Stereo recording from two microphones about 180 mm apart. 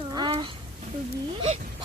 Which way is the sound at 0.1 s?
25° right (ahead or behind).